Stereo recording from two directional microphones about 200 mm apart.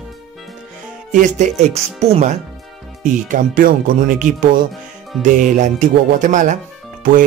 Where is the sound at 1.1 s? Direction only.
35° right (ahead or behind).